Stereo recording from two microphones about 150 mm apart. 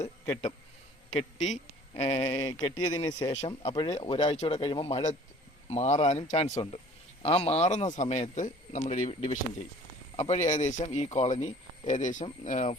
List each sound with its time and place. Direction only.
1.1 s a man's voice: 50° left (ahead or behind)
2.4 s speech: 20° left (ahead or behind)
3.4 s speech: 45° left (ahead or behind)
3.8 s speech: 25° left (ahead or behind); by 12.7 s 50° left (ahead or behind)